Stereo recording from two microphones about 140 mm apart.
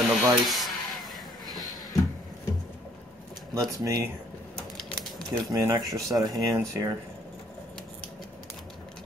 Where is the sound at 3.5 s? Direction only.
25° right (ahead or behind).